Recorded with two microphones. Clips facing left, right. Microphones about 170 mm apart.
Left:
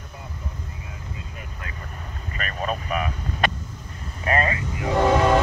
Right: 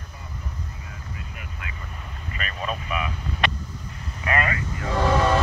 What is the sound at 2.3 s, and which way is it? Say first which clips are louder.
Vehicle: left 3 dB; 40° left (ahead or behind).